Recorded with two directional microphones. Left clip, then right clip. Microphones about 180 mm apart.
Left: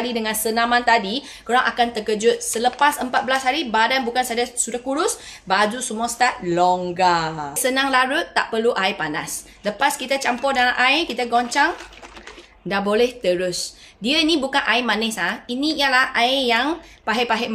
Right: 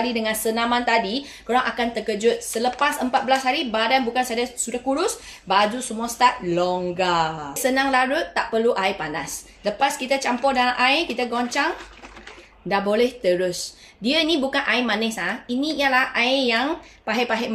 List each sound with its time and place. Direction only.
0.0 s a woman's voice: 30° left (ahead or behind)